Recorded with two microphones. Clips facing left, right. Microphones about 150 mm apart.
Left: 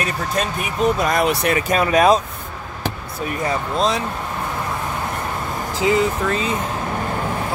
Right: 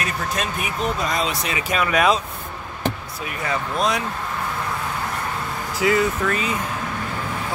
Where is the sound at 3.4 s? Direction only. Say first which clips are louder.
Left 2 dB; 25° left (ahead or behind).